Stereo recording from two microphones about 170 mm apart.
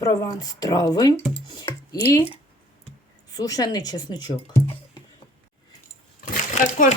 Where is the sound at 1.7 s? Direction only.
20° left (ahead or behind).